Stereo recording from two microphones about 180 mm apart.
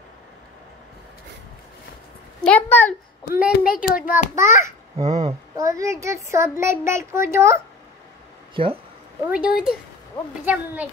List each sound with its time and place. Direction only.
2.4 s a woman's voice: 10° left (ahead or behind)
3.5 s a child's voice: 55° left (ahead or behind)
4.1 s a woman's voice: 15° right (ahead or behind)
4.9 s speech: 40° right (ahead or behind)
5.6 s a woman's voice: 15° right (ahead or behind)
8.6 s speech: 30° right (ahead or behind)
9.3 s a woman's voice: 5° right (ahead or behind)